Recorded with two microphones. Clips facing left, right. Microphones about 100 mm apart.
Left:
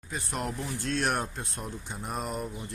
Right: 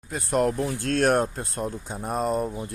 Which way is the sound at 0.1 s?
50° right (ahead or behind).